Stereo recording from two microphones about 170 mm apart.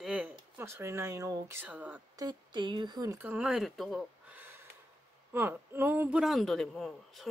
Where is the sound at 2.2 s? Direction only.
25° right (ahead or behind); by 4.0 s centre (ahead or behind).